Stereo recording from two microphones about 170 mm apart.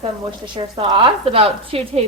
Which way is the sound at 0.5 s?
25° right (ahead or behind).